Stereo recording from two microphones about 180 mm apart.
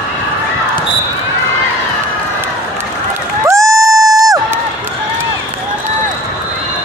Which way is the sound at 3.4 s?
15° right (ahead or behind).